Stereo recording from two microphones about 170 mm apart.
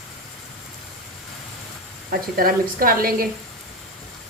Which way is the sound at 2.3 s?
60° right (ahead or behind).